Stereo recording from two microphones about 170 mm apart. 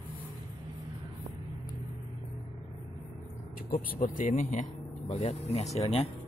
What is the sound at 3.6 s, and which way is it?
Speech, 50° left (ahead or behind).